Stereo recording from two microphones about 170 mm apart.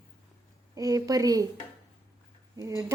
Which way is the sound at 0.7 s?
20° right (ahead or behind).